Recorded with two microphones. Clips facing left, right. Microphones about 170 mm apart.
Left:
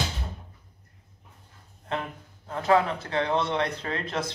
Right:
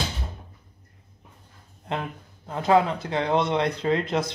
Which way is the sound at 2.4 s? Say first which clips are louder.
Right 2 dB; 15° right (ahead or behind).